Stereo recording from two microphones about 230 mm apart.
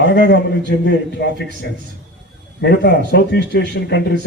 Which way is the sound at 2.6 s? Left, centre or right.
Left.